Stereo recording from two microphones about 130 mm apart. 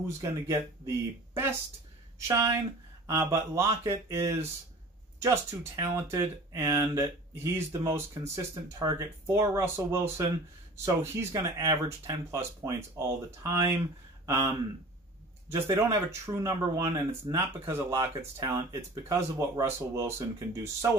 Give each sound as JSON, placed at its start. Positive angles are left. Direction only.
{"t": 0.0, "sound": "speech", "side_deg": -25}
{"t": 15.5, "sound": "speech", "side_deg": -20}